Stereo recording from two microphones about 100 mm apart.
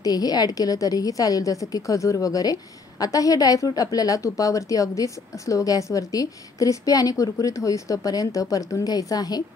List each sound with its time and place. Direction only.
0.0 s a woman's voice: 40° left (ahead or behind)